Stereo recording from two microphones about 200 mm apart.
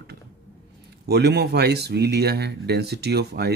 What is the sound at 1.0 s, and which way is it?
Speech, 55° right (ahead or behind).